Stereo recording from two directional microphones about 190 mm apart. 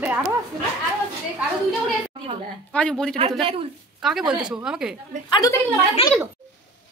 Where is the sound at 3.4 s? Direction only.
30° right (ahead or behind).